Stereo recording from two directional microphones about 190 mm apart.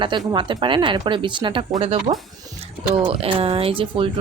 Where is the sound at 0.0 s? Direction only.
25° right (ahead or behind).